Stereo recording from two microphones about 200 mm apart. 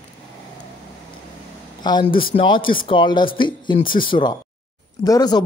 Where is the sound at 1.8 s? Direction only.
20° left (ahead or behind).